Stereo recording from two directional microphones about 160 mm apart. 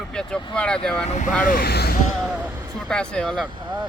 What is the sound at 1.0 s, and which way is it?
Speech, 45° left (ahead or behind).